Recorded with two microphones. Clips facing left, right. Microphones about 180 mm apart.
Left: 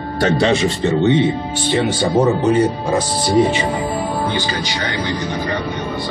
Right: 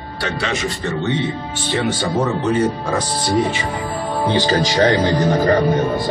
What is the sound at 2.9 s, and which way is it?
Speech, 20° left (ahead or behind).